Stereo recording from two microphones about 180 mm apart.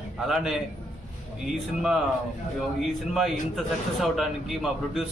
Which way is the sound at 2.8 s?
Centre (ahead or behind).